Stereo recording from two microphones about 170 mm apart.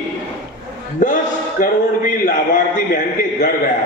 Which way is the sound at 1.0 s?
50° left (ahead or behind).